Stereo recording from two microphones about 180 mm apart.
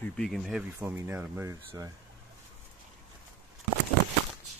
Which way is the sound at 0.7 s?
15° right (ahead or behind).